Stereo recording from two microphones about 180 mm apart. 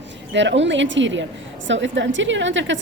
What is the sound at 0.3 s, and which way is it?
A woman's voice, 90° right.